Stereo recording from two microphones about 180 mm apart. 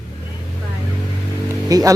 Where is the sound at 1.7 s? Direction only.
20° right (ahead or behind).